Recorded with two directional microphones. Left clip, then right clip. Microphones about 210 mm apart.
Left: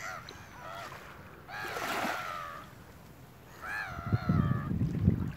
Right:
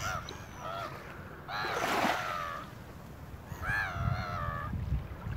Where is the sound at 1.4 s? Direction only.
Centre (ahead or behind).